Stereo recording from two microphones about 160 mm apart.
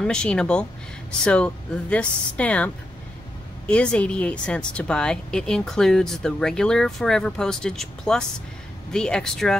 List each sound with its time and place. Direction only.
0.0 s speech: 5° left (ahead or behind)